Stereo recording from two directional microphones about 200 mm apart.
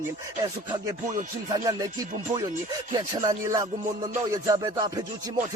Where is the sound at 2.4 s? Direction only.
20° right (ahead or behind).